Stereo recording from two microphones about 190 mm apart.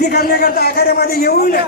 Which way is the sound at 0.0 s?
55° left (ahead or behind).